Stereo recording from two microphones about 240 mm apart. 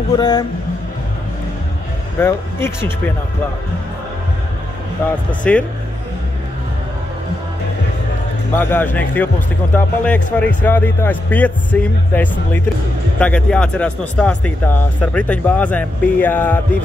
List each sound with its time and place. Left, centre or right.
0.2 s speech: centre
2.1 s speech: centre
5.0 s speech: centre
8.5 s speech: centre